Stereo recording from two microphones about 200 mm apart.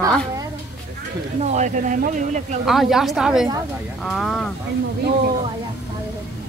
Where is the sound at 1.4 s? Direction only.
35° right (ahead or behind).